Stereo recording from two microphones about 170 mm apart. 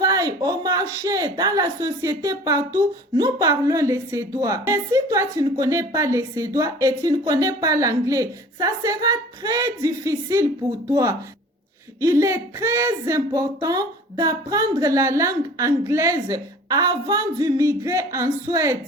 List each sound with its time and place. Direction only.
0.0 s a woman's voice: 20° right (ahead or behind)
11.9 s a woman's voice: 20° right (ahead or behind)